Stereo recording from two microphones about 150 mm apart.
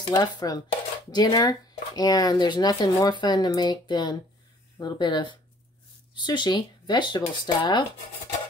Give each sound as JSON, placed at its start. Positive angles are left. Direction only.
{"t": 0.1, "sound": "speech", "side_deg": 25}